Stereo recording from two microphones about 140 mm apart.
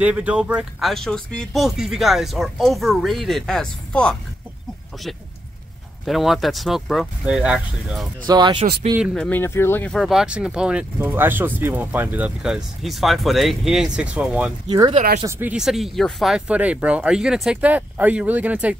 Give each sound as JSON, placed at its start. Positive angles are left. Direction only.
{"t": 0.0, "sound": "speech", "side_deg": -10}
{"t": 6.0, "sound": "speech", "side_deg": 0}
{"t": 8.3, "sound": "speech", "side_deg": -30}
{"t": 9.0, "sound": "speech", "side_deg": 5}
{"t": 9.4, "sound": "speech", "side_deg": 15}
{"t": 9.8, "sound": "speech", "side_deg": 0}
{"t": 14.7, "sound": "speech", "side_deg": -30}
{"t": 15.2, "sound": "speech", "side_deg": -15}
{"t": 15.5, "sound": "speech", "side_deg": 0}